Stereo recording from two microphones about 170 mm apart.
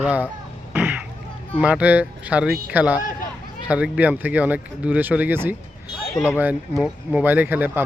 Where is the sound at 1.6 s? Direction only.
10° right (ahead or behind).